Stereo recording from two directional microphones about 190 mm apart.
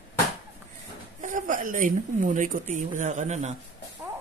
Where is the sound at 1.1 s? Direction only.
40° right (ahead or behind).